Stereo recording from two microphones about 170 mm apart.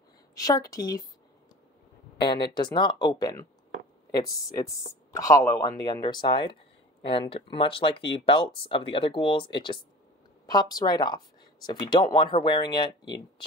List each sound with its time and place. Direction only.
0.3 s speech: 20° left (ahead or behind)
2.1 s speech: 25° left (ahead or behind)